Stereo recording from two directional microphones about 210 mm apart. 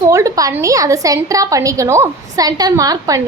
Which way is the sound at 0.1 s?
15° right (ahead or behind).